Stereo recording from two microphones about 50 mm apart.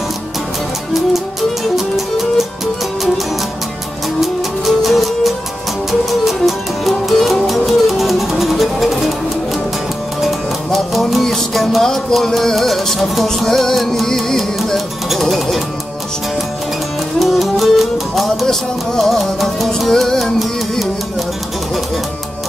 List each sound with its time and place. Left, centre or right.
2.0 s music: centre
4.2 s music: centre
10.2 s music: centre
17.2 s music: centre